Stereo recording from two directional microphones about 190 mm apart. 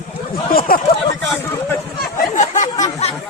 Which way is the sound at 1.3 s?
10° left (ahead or behind).